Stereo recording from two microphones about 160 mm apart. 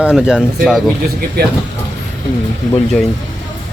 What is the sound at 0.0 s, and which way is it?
Speech, 5° right (ahead or behind).